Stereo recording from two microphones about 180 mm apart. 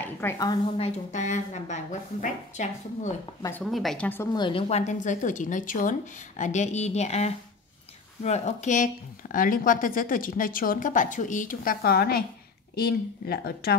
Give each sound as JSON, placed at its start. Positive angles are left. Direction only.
{"t": 0.0, "sound": "a woman's voice", "side_deg": 15}
{"t": 0.7, "sound": "a woman's voice", "side_deg": 35}
{"t": 3.7, "sound": "a woman's voice", "side_deg": 5}
{"t": 4.3, "sound": "a woman's voice", "side_deg": 25}